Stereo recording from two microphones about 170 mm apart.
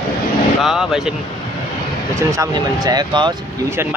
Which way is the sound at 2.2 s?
20° right (ahead or behind).